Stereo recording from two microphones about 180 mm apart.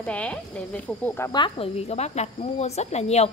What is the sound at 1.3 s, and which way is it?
Speech, 30° left (ahead or behind).